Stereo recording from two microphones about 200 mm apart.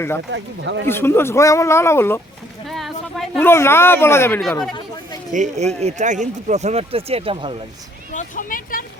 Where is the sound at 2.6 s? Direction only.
Centre (ahead or behind).